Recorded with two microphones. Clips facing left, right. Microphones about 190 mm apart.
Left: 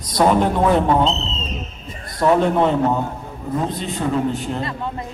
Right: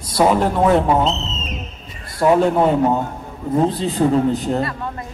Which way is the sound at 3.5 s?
30° right (ahead or behind).